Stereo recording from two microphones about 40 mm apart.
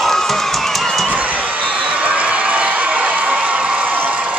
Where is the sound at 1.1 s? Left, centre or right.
Right.